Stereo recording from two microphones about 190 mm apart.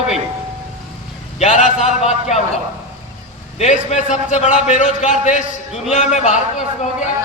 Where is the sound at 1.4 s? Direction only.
40° left (ahead or behind).